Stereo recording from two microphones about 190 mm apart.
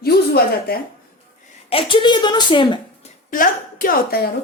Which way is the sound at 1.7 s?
25° left (ahead or behind).